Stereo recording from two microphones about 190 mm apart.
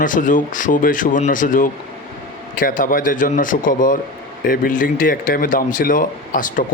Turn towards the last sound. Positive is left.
turn(degrees=45)  # may be behind; listen again after turning